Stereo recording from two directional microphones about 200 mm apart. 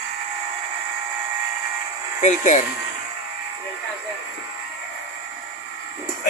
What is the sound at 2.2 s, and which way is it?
Speech, 40° left (ahead or behind).